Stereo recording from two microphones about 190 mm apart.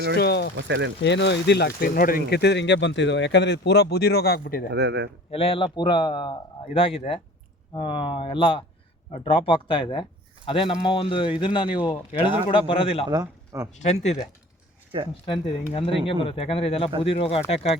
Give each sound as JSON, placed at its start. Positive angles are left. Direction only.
{"t": 0.2, "sound": "speech", "side_deg": 60}
{"t": 0.5, "sound": "speech", "side_deg": -70}
{"t": 1.0, "sound": "speech", "side_deg": 65}
{"t": 4.7, "sound": "speech", "side_deg": -60}
{"t": 5.3, "sound": "a man's voice", "side_deg": 30}
{"t": 13.1, "sound": "speech", "side_deg": -20}
{"t": 13.7, "sound": "speech", "side_deg": 35}
{"t": 15.7, "sound": "speech", "side_deg": 30}